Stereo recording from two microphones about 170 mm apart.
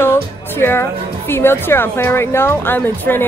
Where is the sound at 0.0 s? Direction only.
15° left (ahead or behind).